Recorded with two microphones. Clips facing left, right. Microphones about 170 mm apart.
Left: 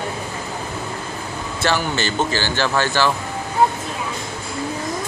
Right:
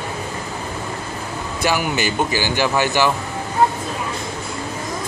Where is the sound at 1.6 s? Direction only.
15° right (ahead or behind).